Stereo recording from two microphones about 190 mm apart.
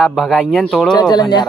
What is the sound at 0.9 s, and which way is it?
Speech, 20° left (ahead or behind).